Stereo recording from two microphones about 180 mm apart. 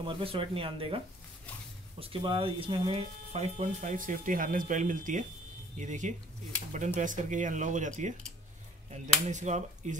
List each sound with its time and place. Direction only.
0.0 s speech: 30° right (ahead or behind)
9.3 s speech: 40° right (ahead or behind)